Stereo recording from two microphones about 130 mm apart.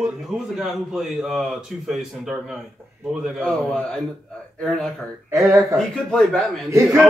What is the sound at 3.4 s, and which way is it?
Speech, 5° left (ahead or behind).